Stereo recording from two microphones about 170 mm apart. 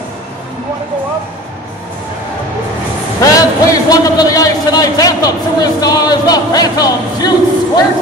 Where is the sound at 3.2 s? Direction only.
20° left (ahead or behind).